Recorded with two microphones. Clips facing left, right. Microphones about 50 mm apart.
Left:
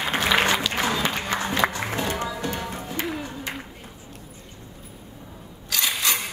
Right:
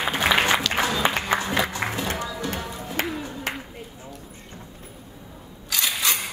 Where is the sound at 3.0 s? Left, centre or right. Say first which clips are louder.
Right 2 dB; right.